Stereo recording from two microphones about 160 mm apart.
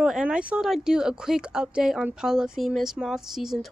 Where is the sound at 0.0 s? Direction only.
5° right (ahead or behind).